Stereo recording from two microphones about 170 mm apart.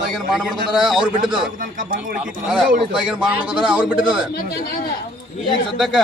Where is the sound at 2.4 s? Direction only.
5° right (ahead or behind).